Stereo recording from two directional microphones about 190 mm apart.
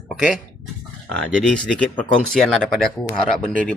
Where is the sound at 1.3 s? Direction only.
5° left (ahead or behind).